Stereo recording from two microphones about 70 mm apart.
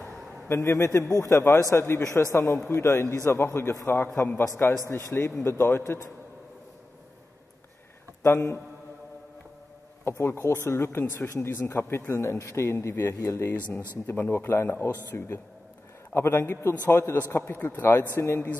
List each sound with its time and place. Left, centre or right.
0.5 s a man's voice: left
8.2 s a man's voice: left
10.0 s a man's voice: left
14.0 s speech: left